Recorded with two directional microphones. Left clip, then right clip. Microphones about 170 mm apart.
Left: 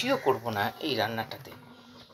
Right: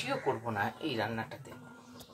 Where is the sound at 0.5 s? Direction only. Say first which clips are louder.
Left 5 dB; 15° left (ahead or behind).